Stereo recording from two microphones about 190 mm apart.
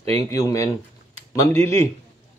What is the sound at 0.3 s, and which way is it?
Speech, 15° left (ahead or behind).